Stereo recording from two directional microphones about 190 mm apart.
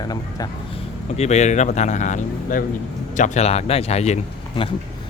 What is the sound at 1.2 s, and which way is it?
Speech, 35° left (ahead or behind).